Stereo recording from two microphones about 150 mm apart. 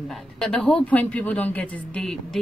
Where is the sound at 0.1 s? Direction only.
Centre (ahead or behind).